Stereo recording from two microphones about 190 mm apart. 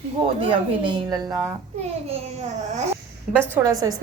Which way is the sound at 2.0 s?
35° right (ahead or behind).